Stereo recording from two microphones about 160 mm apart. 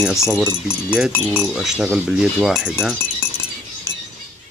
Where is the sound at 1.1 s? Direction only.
15° left (ahead or behind).